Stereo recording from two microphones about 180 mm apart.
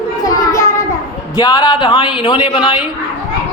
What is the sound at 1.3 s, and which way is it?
A man's voice, 20° left (ahead or behind).